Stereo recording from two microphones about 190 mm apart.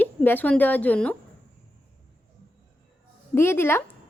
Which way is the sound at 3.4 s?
10° left (ahead or behind).